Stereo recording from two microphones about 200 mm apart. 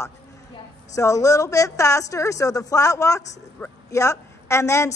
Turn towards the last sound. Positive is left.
turn(degrees=15)  # may be behind; listen again after turning